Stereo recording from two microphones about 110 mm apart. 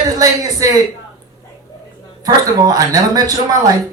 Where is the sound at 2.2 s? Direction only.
35° right (ahead or behind).